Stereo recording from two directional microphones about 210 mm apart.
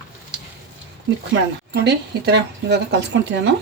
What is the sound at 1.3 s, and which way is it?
Speech, 50° right (ahead or behind).